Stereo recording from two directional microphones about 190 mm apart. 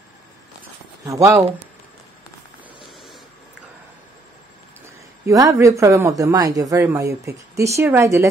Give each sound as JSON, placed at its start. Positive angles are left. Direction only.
{"t": 1.0, "sound": "speech", "side_deg": -15}
{"t": 5.2, "sound": "speech", "side_deg": -15}